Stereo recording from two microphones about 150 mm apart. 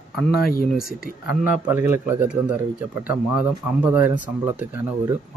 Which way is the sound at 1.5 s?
15° right (ahead or behind).